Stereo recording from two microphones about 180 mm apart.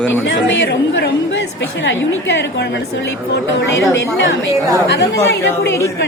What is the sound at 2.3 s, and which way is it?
Speech, 70° left (ahead or behind).